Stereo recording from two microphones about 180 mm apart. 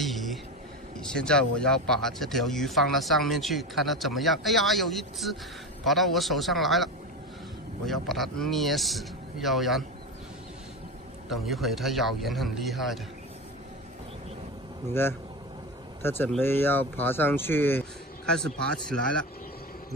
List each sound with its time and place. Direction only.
0.0 s a sound: centre (ahead or behind)
1.0 s speech: 5° left (ahead or behind)
11.2 s speech: centre (ahead or behind)
14.9 s speech: 15° left (ahead or behind)